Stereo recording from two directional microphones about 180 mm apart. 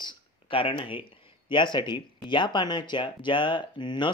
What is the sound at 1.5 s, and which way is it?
Speech, 25° left (ahead or behind).